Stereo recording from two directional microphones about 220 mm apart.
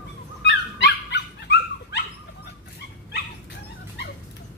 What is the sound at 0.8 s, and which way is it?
Dog, 50° left (ahead or behind).